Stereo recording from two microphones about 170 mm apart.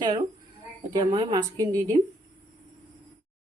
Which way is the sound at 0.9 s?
25° right (ahead or behind).